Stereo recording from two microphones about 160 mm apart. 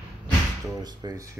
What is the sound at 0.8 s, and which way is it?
Speech, 25° right (ahead or behind).